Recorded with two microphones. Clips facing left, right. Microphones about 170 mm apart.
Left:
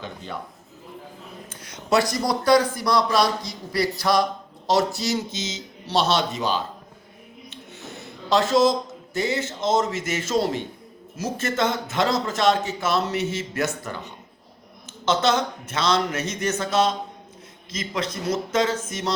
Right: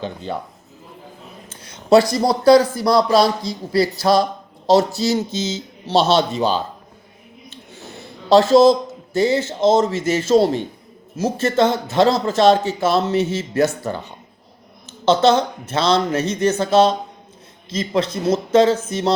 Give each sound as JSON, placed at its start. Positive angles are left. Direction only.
{"t": 1.5, "sound": "speech", "side_deg": -30}
{"t": 8.0, "sound": "a sound", "side_deg": -30}
{"t": 9.1, "sound": "speech", "side_deg": -30}